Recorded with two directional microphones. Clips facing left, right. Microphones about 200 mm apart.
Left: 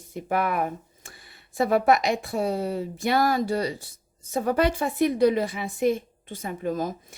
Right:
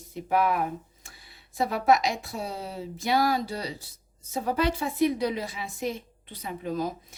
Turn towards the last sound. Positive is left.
turn(degrees=45)  # may be behind; listen again after turning